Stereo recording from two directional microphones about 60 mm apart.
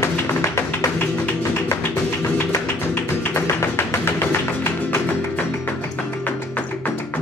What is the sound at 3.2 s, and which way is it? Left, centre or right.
Music, left.